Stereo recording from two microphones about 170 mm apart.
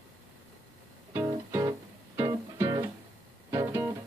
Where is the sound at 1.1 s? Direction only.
15° right (ahead or behind).